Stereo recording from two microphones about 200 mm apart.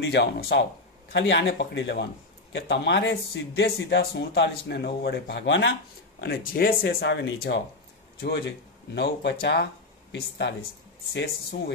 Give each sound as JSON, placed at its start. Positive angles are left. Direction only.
{"t": 0.0, "sound": "speech", "side_deg": 60}
{"t": 6.2, "sound": "speech", "side_deg": 50}